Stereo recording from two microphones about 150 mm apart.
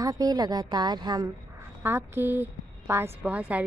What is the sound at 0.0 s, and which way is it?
A woman's voice, 25° right (ahead or behind).